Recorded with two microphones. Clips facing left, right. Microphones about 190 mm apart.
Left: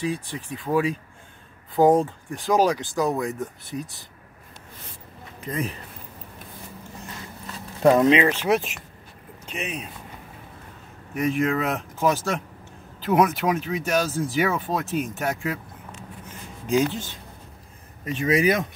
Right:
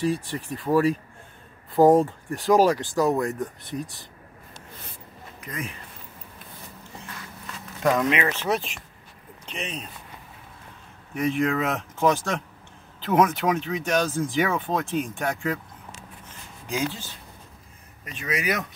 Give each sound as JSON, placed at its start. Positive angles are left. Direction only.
{"t": 0.0, "sound": "speech", "side_deg": 0}
{"t": 5.4, "sound": "speech", "side_deg": 35}
{"t": 7.5, "sound": "speech", "side_deg": 30}
{"t": 8.4, "sound": "speech", "side_deg": 10}
{"t": 11.1, "sound": "speech", "side_deg": 0}
{"t": 18.0, "sound": "speech", "side_deg": 30}